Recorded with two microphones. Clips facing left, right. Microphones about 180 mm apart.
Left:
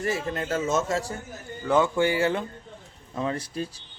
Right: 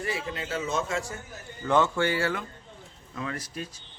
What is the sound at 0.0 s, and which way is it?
A man's voice, 45° left (ahead or behind).